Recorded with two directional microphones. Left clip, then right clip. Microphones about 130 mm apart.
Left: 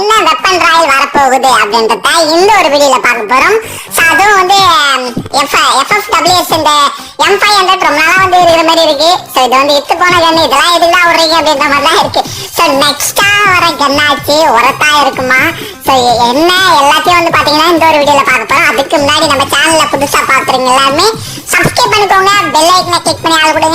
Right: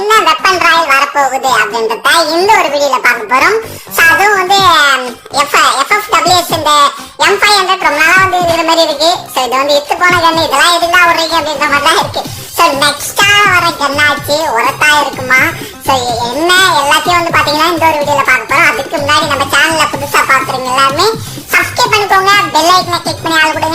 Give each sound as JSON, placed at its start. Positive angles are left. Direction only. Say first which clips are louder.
{"t": 0.1, "sound": "a sound", "louder": "right 1 dB", "side_deg": 35}
{"t": 2.5, "sound": "a child's voice", "louder": "left 3 dB", "side_deg": 35}
{"t": 14.5, "sound": "a child's voice", "louder": "left 2 dB", "side_deg": 50}
{"t": 17.7, "sound": "a child's voice", "louder": "left 4 dB", "side_deg": 50}